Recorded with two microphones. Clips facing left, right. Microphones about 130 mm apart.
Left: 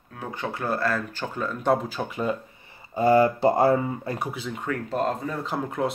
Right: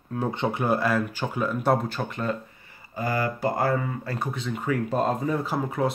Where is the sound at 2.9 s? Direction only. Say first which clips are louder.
Left 9 dB; 25° left (ahead or behind).